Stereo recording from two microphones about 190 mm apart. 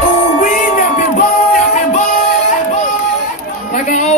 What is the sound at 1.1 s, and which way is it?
Music, 45° left (ahead or behind).